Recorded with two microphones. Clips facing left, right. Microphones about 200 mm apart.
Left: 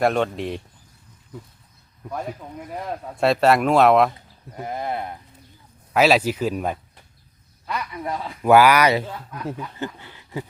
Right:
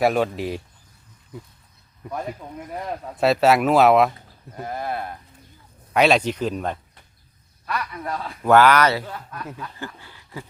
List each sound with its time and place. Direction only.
0.0 s speech: 5° right (ahead or behind)
2.4 s speech: centre (ahead or behind)
4.6 s speech: 20° left (ahead or behind)
5.9 s speech: 5° left (ahead or behind); by 10.4 s 20° left (ahead or behind)